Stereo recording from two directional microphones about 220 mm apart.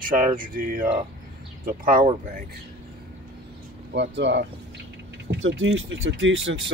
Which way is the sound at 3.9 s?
50° right (ahead or behind).